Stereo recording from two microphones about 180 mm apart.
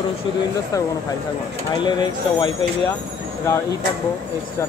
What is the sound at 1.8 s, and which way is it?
Speech, 25° left (ahead or behind).